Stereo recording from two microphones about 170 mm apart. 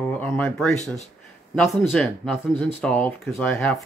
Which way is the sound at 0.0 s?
10° left (ahead or behind).